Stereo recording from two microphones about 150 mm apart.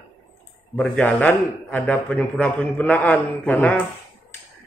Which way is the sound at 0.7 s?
10° left (ahead or behind).